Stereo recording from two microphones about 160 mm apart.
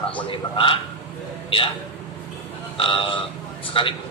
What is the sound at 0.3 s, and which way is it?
Speech, 35° left (ahead or behind).